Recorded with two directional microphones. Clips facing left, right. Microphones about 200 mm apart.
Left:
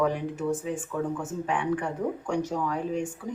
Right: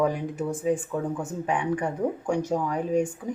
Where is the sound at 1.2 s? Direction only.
10° right (ahead or behind).